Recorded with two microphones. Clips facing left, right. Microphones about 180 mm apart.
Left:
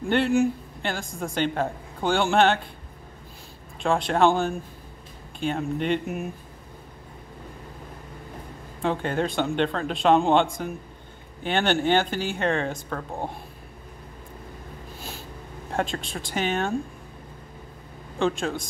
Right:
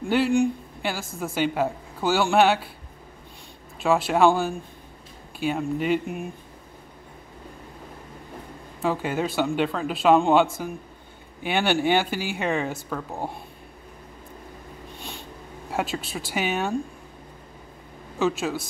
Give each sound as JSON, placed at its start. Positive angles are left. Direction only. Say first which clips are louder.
{"t": 0.0, "sound": "speech", "louder": "even", "side_deg": 0}
{"t": 3.8, "sound": "speech", "louder": "right 2 dB", "side_deg": -5}
{"t": 8.8, "sound": "speech", "louder": "even", "side_deg": -5}
{"t": 15.0, "sound": "snort", "louder": "even", "side_deg": 0}
{"t": 15.7, "sound": "speech", "louder": "even", "side_deg": -5}
{"t": 18.2, "sound": "speech", "louder": "right 1 dB", "side_deg": -5}